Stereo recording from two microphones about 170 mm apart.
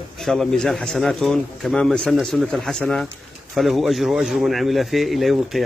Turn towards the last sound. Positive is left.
turn(degrees=0)  # may be behind; listen again after turning